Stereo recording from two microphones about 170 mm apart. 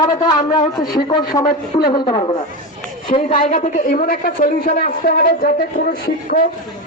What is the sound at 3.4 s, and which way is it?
A woman's voice, 50° left (ahead or behind).